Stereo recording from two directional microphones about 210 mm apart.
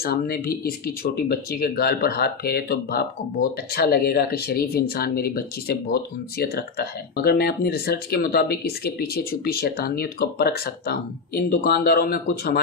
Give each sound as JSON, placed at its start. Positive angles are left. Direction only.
{"t": 0.0, "sound": "speech", "side_deg": 45}